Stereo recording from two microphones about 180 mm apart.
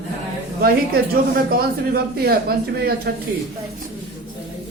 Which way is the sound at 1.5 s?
55° right (ahead or behind).